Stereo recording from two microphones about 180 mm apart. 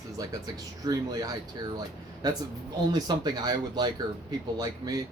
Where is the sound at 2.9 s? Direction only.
20° right (ahead or behind).